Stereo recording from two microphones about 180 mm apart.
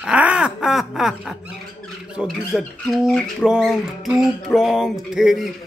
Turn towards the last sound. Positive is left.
turn(degrees=0)  # may be behind; listen again after turning